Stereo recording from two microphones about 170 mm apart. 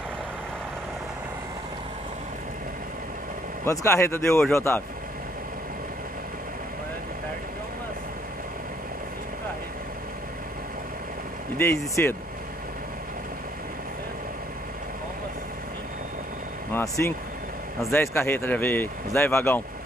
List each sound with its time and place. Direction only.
3.6 s speech: 15° left (ahead or behind)
11.5 s speech: 15° left (ahead or behind)
16.7 s speech: 15° left (ahead or behind)